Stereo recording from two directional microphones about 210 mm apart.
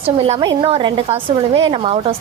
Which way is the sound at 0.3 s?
20° right (ahead or behind).